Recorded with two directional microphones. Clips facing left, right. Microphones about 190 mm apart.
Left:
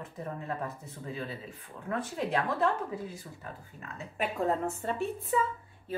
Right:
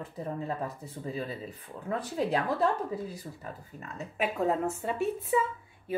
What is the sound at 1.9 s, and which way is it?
Speech, 35° right (ahead or behind).